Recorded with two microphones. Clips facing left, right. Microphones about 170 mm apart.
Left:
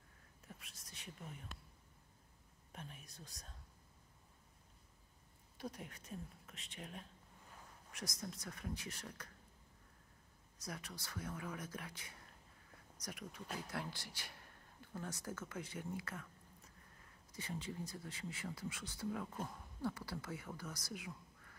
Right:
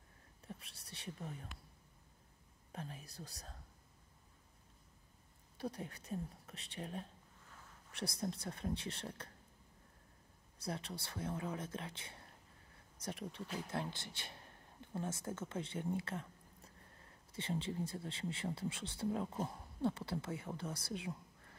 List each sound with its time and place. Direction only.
0.5 s a sound: 30° right (ahead or behind)
2.7 s speech: 35° right (ahead or behind)
5.6 s a woman's voice: 35° right (ahead or behind)
10.6 s speech: 30° right (ahead or behind)